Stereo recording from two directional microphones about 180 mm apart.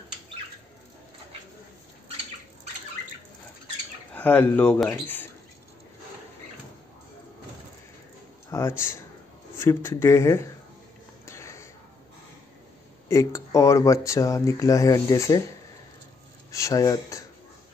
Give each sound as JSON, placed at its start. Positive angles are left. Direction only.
{"t": 4.1, "sound": "speech", "side_deg": 10}
{"t": 8.5, "sound": "a man's voice", "side_deg": 15}
{"t": 11.2, "sound": "sniff", "side_deg": 15}
{"t": 13.1, "sound": "speech", "side_deg": 15}
{"t": 16.5, "sound": "speech", "side_deg": 20}